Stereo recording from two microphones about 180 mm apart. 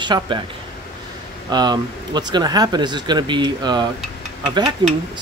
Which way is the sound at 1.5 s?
25° right (ahead or behind).